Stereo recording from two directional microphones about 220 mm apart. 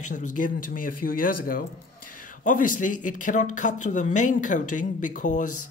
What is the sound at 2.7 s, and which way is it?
Speech, 35° left (ahead or behind).